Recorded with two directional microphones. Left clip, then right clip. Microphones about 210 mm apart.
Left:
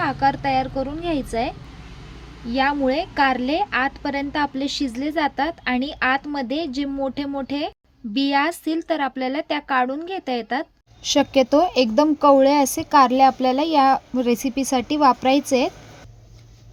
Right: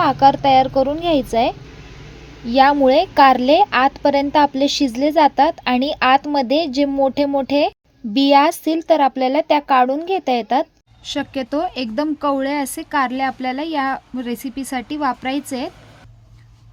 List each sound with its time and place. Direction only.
0.0 s a woman's voice: 15° right (ahead or behind)
11.1 s a woman's voice: 10° left (ahead or behind)